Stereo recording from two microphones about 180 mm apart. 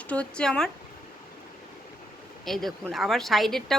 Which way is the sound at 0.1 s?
5° left (ahead or behind).